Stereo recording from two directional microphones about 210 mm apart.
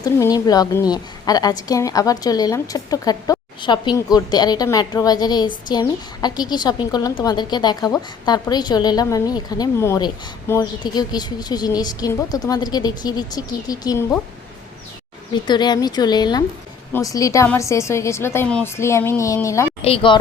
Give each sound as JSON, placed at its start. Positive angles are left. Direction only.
{"t": 0.0, "sound": "a woman's voice", "side_deg": 15}
{"t": 15.3, "sound": "a woman's voice", "side_deg": 20}
{"t": 19.8, "sound": "a woman's voice", "side_deg": 25}